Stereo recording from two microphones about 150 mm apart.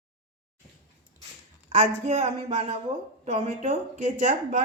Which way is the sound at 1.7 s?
50° right (ahead or behind).